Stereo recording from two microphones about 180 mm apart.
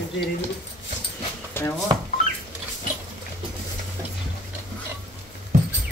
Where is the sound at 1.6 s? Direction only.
10° left (ahead or behind).